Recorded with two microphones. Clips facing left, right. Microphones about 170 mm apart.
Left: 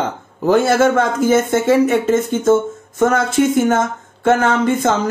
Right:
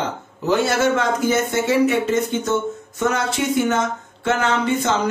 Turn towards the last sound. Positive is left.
turn(degrees=50)  # may be behind; listen again after turning